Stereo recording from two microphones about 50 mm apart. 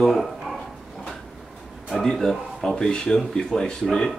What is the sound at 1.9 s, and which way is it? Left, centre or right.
Speech, centre.